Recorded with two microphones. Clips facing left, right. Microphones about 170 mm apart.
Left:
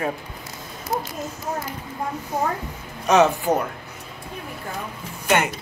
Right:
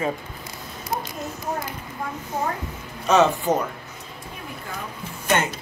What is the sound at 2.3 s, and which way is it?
A man's voice, 15° left (ahead or behind).